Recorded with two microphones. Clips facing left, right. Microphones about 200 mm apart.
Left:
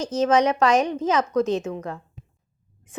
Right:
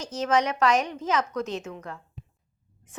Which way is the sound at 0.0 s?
25° left (ahead or behind).